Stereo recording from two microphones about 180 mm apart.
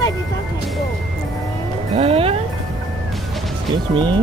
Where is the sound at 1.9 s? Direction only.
30° right (ahead or behind).